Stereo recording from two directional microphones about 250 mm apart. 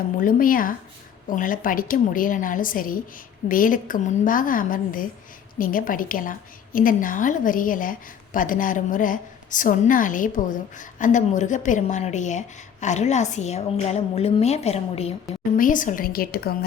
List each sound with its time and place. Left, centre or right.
0.2 s a woman's voice: left